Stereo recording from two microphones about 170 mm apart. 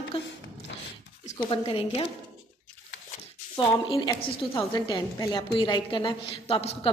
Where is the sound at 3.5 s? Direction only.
25° left (ahead or behind).